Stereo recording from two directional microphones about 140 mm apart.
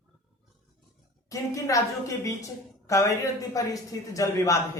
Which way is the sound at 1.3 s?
25° left (ahead or behind).